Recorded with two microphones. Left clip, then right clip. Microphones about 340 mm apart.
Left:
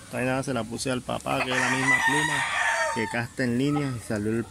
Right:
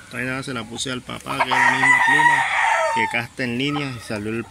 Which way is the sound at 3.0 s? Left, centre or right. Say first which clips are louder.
Right 7 dB; centre.